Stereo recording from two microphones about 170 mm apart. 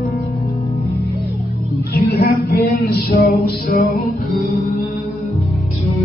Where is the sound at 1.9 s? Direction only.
65° left (ahead or behind).